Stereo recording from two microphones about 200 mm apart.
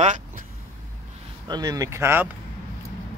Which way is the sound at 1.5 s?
20° right (ahead or behind).